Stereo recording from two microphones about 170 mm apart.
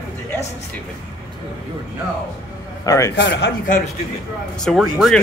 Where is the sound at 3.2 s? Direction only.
90° left.